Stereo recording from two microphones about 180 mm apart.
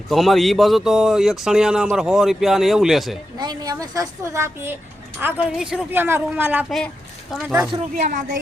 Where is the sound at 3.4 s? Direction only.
20° right (ahead or behind).